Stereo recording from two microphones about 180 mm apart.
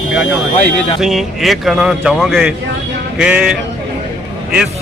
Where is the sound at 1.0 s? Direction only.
Centre (ahead or behind).